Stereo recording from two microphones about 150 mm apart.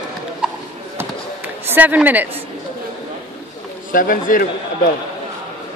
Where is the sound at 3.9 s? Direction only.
65° left (ahead or behind).